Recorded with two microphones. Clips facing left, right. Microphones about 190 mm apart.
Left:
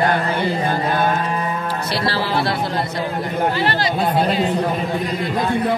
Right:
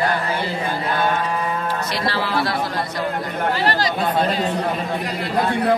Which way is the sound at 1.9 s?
30° left (ahead or behind).